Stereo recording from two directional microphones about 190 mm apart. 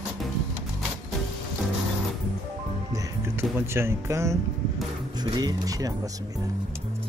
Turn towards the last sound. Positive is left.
turn(degrees=-20)  # may be behind; listen again after turning